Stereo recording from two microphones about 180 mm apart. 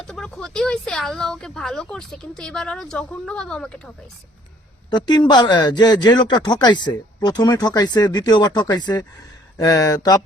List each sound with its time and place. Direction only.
0.0 s speech: 5° left (ahead or behind)
4.9 s speech: 25° left (ahead or behind)